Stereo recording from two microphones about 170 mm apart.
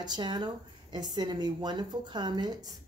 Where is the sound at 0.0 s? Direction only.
25° right (ahead or behind).